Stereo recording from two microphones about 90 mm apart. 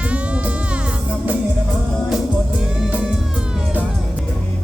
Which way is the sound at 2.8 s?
5° right (ahead or behind).